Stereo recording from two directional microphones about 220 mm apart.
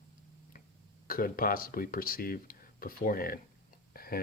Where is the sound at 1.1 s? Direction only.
40° left (ahead or behind).